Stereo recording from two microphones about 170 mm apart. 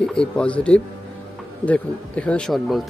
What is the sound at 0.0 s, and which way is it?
Speech, 5° left (ahead or behind).